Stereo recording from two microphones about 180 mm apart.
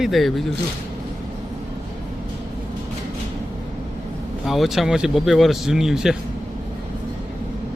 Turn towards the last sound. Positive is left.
turn(degrees=-5)  # may be behind; listen again after turning